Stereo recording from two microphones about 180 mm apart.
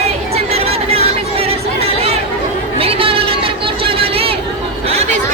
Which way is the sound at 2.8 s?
30° right (ahead or behind).